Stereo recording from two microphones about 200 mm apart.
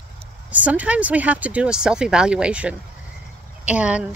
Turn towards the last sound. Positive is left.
turn(degrees=-5)  # may be behind; listen again after turning